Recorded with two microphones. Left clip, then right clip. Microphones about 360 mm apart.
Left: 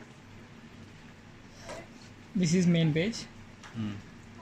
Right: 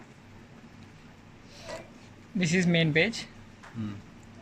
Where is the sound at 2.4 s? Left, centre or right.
Right.